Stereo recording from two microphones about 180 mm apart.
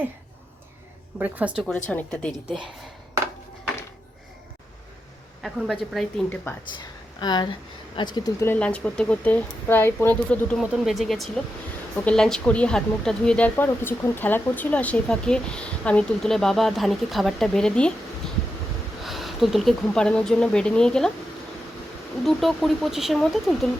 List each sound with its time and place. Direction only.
1.2 s a woman's voice: 10° right (ahead or behind)
1.9 s speech: 10° left (ahead or behind)
5.4 s a woman's voice: centre (ahead or behind)
6.7 s a sound: 25° left (ahead or behind)
7.9 s speech: 25° left (ahead or behind)
8.5 s speech: 5° left (ahead or behind)
10.6 s speech: 5° right (ahead or behind)
19.0 s speech: centre (ahead or behind)
22.2 s speech: centre (ahead or behind)